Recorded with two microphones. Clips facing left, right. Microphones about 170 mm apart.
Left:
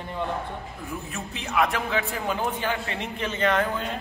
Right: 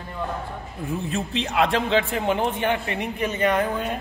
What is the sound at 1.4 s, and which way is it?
A man's voice, 25° right (ahead or behind).